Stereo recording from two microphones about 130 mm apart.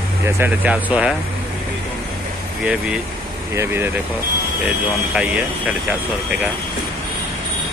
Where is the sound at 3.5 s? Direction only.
20° right (ahead or behind).